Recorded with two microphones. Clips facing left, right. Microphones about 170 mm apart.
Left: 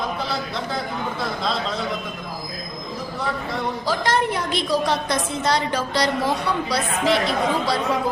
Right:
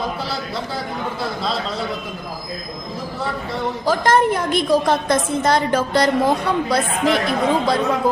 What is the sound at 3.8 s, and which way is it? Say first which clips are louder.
A woman's voice: right 7 dB; 50° right (ahead or behind).